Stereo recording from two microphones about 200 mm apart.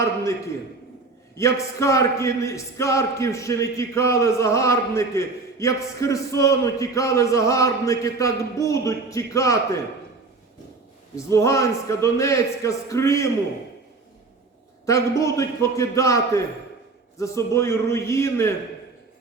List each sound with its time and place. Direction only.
1.4 s speech: 15° left (ahead or behind)
11.3 s speech: 15° left (ahead or behind)
14.8 s speech: 15° left (ahead or behind)